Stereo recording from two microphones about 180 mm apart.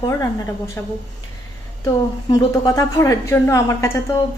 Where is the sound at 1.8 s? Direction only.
20° left (ahead or behind).